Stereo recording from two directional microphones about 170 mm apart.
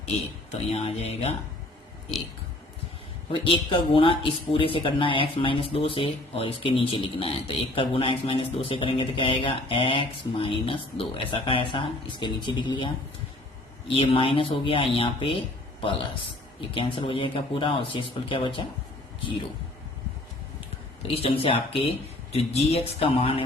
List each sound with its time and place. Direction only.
0.5 s speech: 40° left (ahead or behind)
3.3 s speech: 30° left (ahead or behind)
16.7 s speech: 30° left (ahead or behind)
21.1 s speech: 35° left (ahead or behind)